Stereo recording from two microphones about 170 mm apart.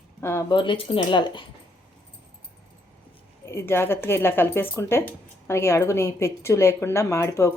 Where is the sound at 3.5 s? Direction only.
15° left (ahead or behind).